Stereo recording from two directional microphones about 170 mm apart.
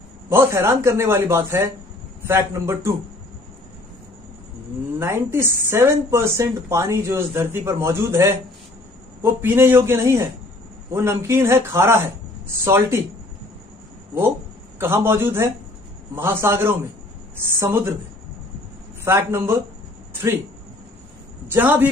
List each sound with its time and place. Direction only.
0.3 s speech: 15° right (ahead or behind)
4.9 s speech: 15° right (ahead or behind)
14.8 s speech: 15° right (ahead or behind)
19.0 s speech: 15° right (ahead or behind)
21.5 s speech: 10° right (ahead or behind)